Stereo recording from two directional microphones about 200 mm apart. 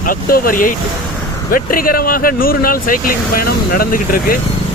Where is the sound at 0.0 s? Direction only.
45° left (ahead or behind).